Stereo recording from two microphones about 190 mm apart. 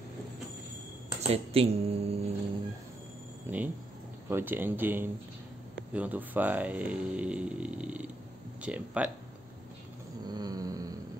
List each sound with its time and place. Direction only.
1.2 s speech: 30° right (ahead or behind)
3.4 s speech: 10° right (ahead or behind)
10.2 s a sound: 20° right (ahead or behind)